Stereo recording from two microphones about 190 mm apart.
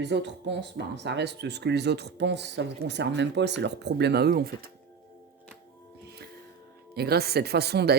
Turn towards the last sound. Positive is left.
turn(degrees=-60)  # may be behind; listen again after turning